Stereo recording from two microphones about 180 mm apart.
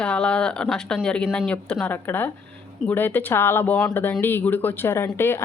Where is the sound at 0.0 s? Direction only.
5° left (ahead or behind).